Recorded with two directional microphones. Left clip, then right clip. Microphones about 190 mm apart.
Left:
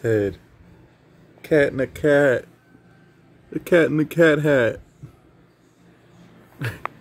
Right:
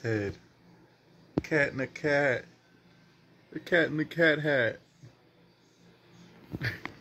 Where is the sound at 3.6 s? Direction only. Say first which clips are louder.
Left 9 dB; 70° left (ahead or behind).